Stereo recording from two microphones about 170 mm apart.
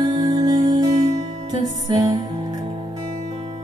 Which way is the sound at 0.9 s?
40° right (ahead or behind).